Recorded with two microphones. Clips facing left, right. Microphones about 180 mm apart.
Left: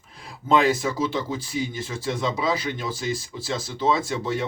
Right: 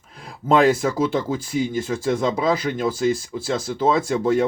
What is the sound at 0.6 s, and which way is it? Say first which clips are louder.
Speech: right 5 dB; 50° right (ahead or behind).